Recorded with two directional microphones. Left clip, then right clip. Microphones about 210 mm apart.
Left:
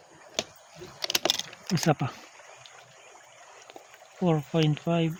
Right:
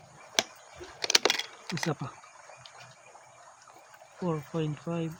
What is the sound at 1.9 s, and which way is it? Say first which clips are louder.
Speech: left 8 dB; 40° left (ahead or behind).